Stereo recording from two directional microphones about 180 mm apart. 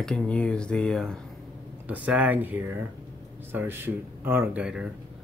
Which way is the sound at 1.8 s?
10° right (ahead or behind).